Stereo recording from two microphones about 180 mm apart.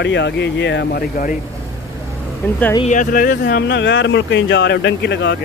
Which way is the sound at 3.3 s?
75° left (ahead or behind).